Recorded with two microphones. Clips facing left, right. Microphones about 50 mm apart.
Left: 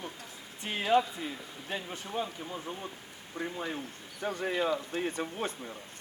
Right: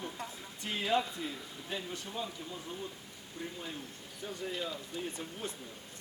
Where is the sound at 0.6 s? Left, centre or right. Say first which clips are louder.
Left 5 dB; left.